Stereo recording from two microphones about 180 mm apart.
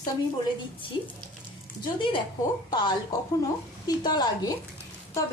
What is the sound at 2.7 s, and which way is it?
Speech, 25° left (ahead or behind).